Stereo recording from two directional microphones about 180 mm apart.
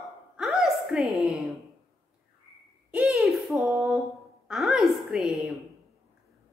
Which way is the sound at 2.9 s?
5° right (ahead or behind).